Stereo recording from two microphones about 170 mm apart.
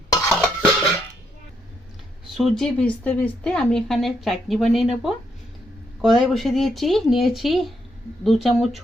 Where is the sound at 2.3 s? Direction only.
Centre (ahead or behind).